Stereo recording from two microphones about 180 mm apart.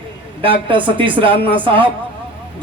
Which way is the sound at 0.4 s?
30° right (ahead or behind).